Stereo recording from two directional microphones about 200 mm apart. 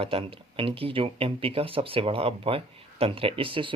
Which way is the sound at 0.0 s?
30° right (ahead or behind).